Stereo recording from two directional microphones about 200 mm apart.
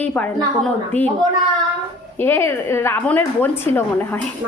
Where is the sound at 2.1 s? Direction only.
10° left (ahead or behind).